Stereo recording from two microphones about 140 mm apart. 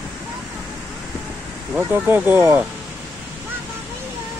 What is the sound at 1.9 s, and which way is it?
Speech, 15° right (ahead or behind).